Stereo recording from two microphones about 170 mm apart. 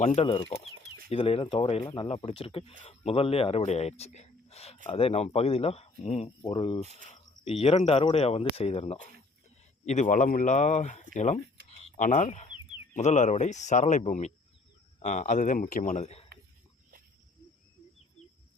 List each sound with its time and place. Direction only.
0.0 s speech: 40° left (ahead or behind)